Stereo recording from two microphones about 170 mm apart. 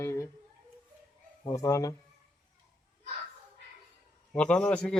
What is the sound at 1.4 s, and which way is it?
Speech, 20° left (ahead or behind).